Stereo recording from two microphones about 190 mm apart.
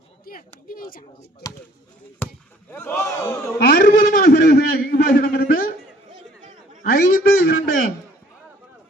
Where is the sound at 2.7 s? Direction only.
10° left (ahead or behind).